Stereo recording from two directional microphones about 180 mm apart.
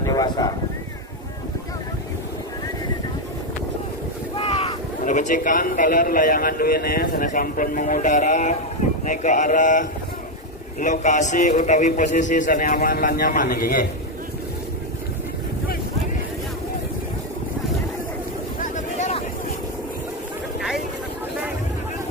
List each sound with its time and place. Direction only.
0.0 s a sound: 20° left (ahead or behind)
4.4 s boat: 35° left (ahead or behind)
5.0 s a man's voice: 45° left (ahead or behind)
18.6 s vehicle: 40° left (ahead or behind)